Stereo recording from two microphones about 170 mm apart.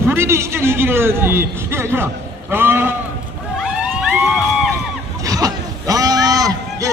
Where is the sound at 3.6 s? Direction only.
Centre (ahead or behind).